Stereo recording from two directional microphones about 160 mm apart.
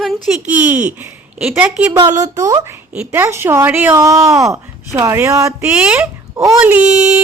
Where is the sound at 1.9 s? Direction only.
25° right (ahead or behind).